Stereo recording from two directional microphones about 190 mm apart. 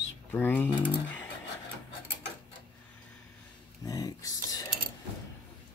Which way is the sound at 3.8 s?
15° left (ahead or behind).